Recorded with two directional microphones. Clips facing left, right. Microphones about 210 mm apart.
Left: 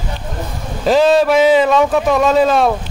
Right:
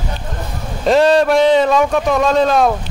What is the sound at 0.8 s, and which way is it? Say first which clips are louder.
Speech: even; centre (ahead or behind).